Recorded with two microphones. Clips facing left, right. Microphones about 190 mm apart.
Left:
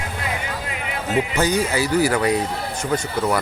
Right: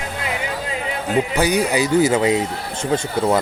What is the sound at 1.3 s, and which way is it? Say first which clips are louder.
A man's voice: right 2 dB; 15° right (ahead or behind).